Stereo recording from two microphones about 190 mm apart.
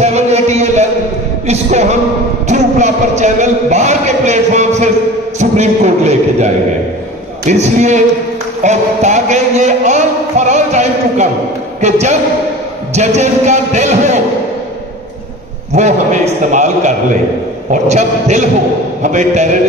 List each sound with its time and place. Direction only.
0.0 s music: 35° right (ahead or behind)
1.5 s speech: 35° right (ahead or behind)
15.7 s speech: 40° right (ahead or behind)